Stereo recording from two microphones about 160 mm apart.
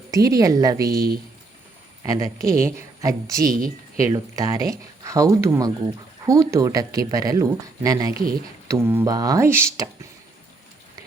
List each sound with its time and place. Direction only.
0.1 s speech: 20° right (ahead or behind)
2.0 s speech: 20° right (ahead or behind)
8.1 s speech: 65° right (ahead or behind)
8.6 s speech: 15° right (ahead or behind)